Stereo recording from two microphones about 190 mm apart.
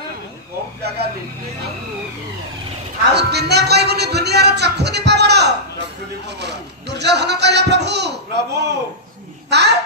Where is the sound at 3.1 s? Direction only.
60° right (ahead or behind).